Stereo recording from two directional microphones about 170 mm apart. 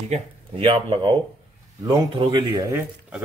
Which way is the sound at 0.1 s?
35° right (ahead or behind).